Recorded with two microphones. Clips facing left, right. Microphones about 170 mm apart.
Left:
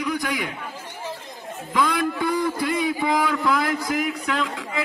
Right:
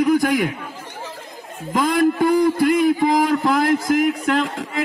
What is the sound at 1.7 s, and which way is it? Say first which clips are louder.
A man's voice: right 5 dB; 45° right (ahead or behind).